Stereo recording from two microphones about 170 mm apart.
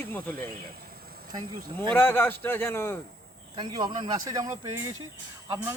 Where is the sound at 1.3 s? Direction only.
25° right (ahead or behind).